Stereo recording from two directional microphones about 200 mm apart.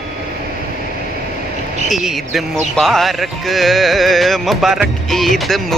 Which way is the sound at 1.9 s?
Centre (ahead or behind).